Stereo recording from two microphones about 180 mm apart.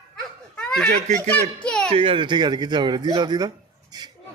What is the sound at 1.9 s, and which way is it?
Speech, 30° right (ahead or behind).